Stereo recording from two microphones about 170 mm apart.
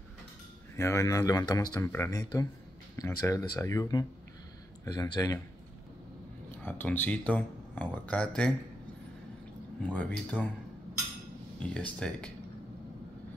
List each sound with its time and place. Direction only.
0.7 s speech: 15° left (ahead or behind)
6.6 s speech: 10° left (ahead or behind)
9.8 s speech: 5° left (ahead or behind)
11.6 s speech: 5° left (ahead or behind)